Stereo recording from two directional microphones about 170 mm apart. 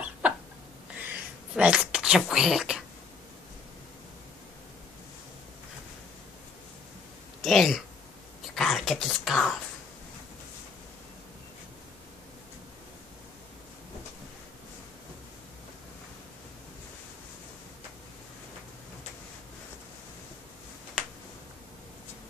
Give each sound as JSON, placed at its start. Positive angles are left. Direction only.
{"t": 0.2, "sound": "chicken", "side_deg": -10}
{"t": 1.0, "sound": "a sound", "side_deg": -5}
{"t": 7.4, "sound": "speech", "side_deg": 0}